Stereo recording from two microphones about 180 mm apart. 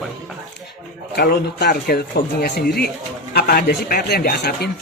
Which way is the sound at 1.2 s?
60° left (ahead or behind).